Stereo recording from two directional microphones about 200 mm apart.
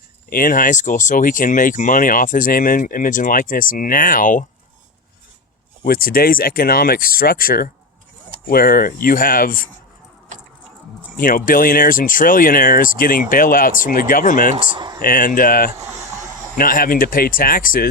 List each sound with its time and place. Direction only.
0.3 s speech: 45° left (ahead or behind)
5.8 s speech: 45° left (ahead or behind)
11.2 s speech: 45° left (ahead or behind)
14.5 s speech: 30° right (ahead or behind)
15.0 s speech: 45° left (ahead or behind)
15.9 s vehicle: 15° right (ahead or behind)
16.6 s speech: 45° left (ahead or behind)